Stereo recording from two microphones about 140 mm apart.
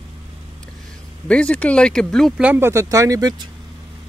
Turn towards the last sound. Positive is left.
turn(degrees=-25)  # may be behind; listen again after turning